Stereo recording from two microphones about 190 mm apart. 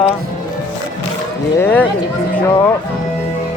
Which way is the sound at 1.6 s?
10° left (ahead or behind).